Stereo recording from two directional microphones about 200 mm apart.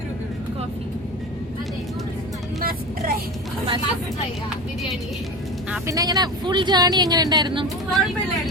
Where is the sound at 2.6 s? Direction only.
45° right (ahead or behind).